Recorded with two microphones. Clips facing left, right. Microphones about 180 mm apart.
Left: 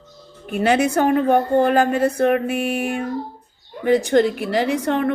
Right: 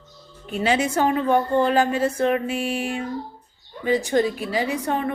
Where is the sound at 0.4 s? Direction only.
55° left (ahead or behind).